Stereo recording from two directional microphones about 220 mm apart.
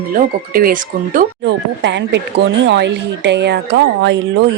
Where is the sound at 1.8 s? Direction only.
55° right (ahead or behind).